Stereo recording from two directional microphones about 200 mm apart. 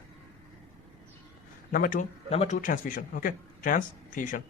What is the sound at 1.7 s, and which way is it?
Speech, 45° left (ahead or behind).